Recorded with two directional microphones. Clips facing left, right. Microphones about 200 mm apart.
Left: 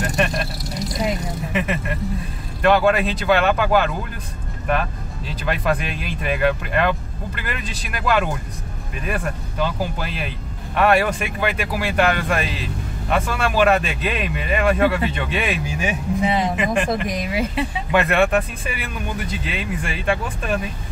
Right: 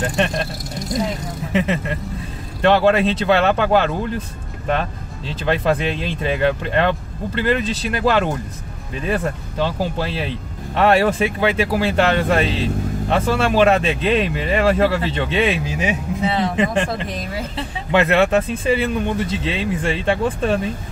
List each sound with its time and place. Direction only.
0.0 s vehicle: 25° right (ahead or behind)
1.5 s speech: 25° right (ahead or behind)
5.4 s speech: 25° right (ahead or behind)
16.3 s a woman's voice: 15° left (ahead or behind)
16.5 s speech: 30° right (ahead or behind)
17.1 s a woman's voice: 10° left (ahead or behind)
17.9 s speech: 25° right (ahead or behind)